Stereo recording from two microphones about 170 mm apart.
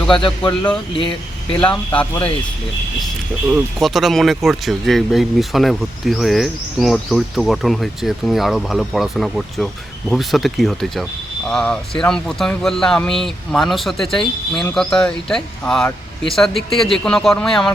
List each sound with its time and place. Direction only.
0.3 s speech: 5° left (ahead or behind)
0.9 s speech: 30° left (ahead or behind)
1.6 s speech: 5° left (ahead or behind)
3.5 s speech: centre (ahead or behind)